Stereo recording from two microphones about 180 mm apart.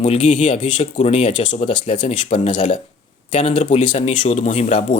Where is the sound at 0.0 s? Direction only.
40° left (ahead or behind).